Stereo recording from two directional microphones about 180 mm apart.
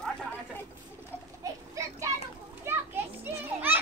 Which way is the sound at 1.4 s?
20° right (ahead or behind).